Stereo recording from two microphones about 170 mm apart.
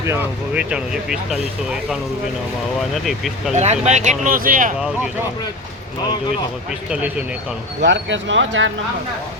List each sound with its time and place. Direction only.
0.0 s speech: 15° right (ahead or behind)
3.5 s speech: 40° right (ahead or behind)
6.9 s speech: 10° right (ahead or behind)
7.8 s speech: 90° right